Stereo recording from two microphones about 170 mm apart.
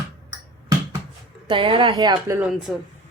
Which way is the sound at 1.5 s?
30° right (ahead or behind).